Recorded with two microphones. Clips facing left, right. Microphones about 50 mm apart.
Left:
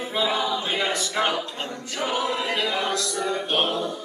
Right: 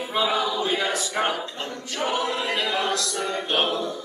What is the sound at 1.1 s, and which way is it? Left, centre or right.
Speech, left.